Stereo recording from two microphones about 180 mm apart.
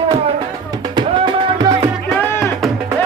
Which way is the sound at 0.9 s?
25° right (ahead or behind).